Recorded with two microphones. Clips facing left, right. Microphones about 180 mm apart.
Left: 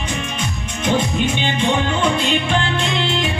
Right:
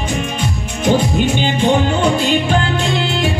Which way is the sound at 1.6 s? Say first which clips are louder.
Right 4 dB; 45° right (ahead or behind).